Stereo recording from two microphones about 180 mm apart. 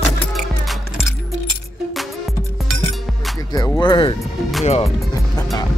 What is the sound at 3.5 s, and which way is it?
Music, 20° left (ahead or behind).